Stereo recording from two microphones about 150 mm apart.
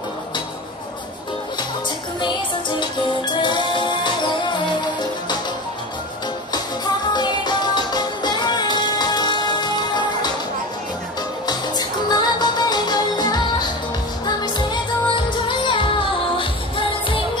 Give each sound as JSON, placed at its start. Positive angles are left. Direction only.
{"t": 3.3, "sound": "music", "side_deg": 30}
{"t": 7.2, "sound": "music", "side_deg": 30}
{"t": 11.4, "sound": "music", "side_deg": 25}